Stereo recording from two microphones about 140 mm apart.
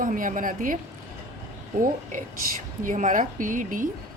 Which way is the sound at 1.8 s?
65° right (ahead or behind).